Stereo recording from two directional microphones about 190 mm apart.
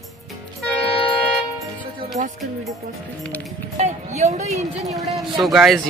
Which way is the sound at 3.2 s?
5° left (ahead or behind).